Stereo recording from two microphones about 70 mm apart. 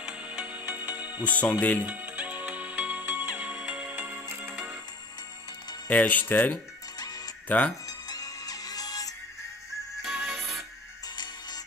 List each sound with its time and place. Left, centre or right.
0.0 s music: centre
1.2 s speech: left
1.9 s music: right
5.9 s speech: left
8.1 s music: left
10.0 s music: centre